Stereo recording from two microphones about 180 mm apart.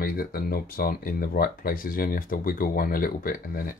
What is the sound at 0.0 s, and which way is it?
Speech, 55° left (ahead or behind).